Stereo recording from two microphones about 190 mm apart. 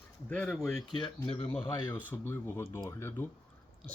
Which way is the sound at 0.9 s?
30° left (ahead or behind).